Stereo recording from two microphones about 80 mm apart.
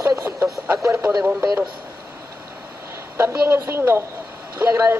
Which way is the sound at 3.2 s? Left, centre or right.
Right.